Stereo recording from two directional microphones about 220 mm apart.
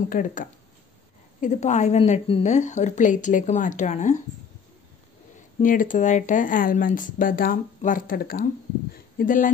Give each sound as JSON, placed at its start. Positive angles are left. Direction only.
{"t": 0.1, "sound": "speech", "side_deg": 35}
{"t": 5.6, "sound": "speech", "side_deg": 35}